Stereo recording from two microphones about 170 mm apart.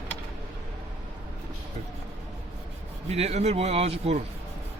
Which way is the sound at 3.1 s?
40° right (ahead or behind).